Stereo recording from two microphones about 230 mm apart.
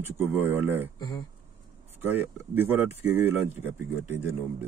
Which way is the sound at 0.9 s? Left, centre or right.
Centre.